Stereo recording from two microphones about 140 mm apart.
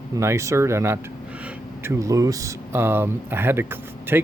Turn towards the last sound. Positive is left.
turn(degrees=-15)  # may be behind; listen again after turning